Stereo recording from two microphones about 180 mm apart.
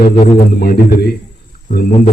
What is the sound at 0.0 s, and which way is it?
A man's voice, 55° left (ahead or behind).